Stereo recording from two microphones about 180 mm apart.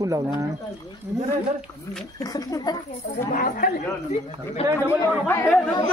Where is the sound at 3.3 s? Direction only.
50° left (ahead or behind).